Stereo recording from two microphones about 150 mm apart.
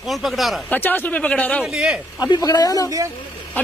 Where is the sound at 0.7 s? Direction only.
10° left (ahead or behind).